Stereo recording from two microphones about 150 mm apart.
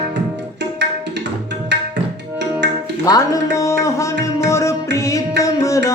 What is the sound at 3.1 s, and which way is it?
Music, 20° left (ahead or behind).